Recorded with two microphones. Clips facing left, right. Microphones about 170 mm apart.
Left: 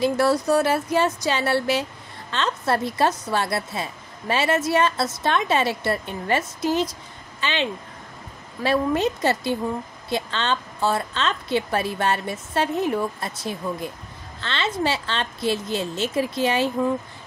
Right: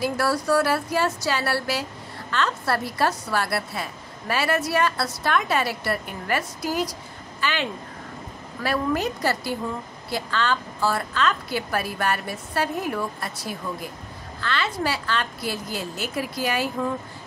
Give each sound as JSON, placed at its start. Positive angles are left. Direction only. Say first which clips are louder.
{"t": 0.0, "sound": "a woman's voice", "louder": "left 4 dB", "side_deg": 20}
{"t": 8.6, "sound": "a woman's voice", "louder": "left 3 dB", "side_deg": 25}